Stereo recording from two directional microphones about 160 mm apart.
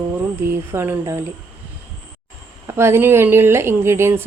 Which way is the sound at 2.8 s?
15° right (ahead or behind).